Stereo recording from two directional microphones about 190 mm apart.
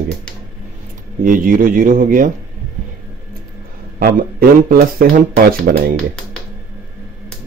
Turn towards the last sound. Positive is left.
turn(degrees=-50)  # may be behind; listen again after turning